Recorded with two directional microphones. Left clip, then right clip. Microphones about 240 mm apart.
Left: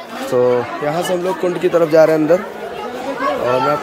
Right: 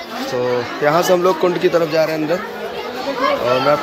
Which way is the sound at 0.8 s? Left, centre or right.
Centre.